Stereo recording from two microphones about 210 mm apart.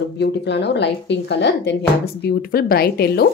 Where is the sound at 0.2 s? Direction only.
55° left (ahead or behind).